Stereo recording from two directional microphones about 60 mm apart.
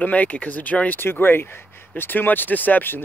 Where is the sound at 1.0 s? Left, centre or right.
Left.